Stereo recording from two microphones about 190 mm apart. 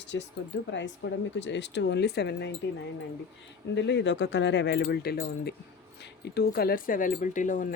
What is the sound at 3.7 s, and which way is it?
Speech, 65° left (ahead or behind).